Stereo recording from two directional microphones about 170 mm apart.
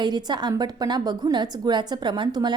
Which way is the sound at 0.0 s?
25° right (ahead or behind).